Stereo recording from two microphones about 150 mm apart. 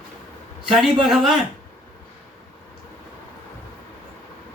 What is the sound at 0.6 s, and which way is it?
Speech, centre (ahead or behind).